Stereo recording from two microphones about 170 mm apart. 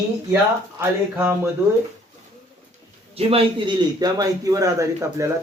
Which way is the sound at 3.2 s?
35° right (ahead or behind).